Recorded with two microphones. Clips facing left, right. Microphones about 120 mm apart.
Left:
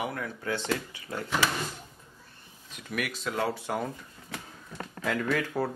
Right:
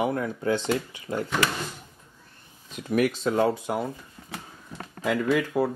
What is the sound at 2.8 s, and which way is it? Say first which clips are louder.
Speech: right 10 dB; 30° right (ahead or behind).